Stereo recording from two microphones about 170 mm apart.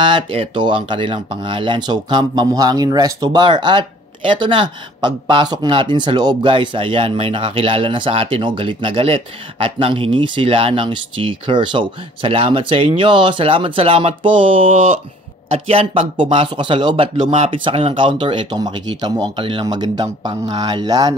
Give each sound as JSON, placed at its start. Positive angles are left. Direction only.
{"t": 0.0, "sound": "speech", "side_deg": -30}